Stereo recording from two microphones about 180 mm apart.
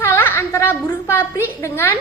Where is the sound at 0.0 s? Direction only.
10° left (ahead or behind).